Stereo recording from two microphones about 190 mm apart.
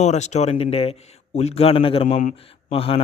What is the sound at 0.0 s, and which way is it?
Speech, 35° left (ahead or behind).